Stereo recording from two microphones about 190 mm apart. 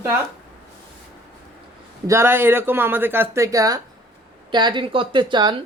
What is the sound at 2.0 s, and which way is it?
A woman's voice, 15° right (ahead or behind).